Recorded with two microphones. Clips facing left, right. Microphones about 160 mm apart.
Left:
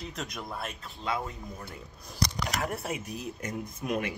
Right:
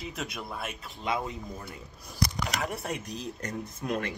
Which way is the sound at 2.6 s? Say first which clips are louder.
Even; centre (ahead or behind).